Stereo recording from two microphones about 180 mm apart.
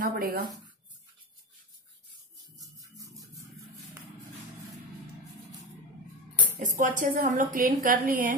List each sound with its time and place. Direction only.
0.0 s a sound: 55° right (ahead or behind)
2.6 s music: 20° right (ahead or behind)
6.6 s a woman's voice: 45° right (ahead or behind)